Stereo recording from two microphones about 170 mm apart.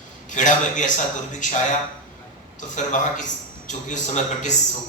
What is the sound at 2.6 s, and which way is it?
Speech, 45° left (ahead or behind).